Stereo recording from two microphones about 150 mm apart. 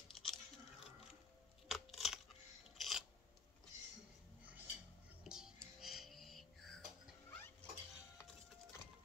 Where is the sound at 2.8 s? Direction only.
Centre (ahead or behind).